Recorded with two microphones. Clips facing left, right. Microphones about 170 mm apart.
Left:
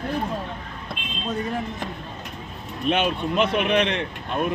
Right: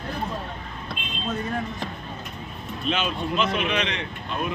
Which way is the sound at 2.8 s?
55° left (ahead or behind).